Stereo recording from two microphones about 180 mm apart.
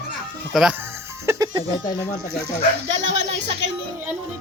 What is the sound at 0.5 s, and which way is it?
Speech, centre (ahead or behind).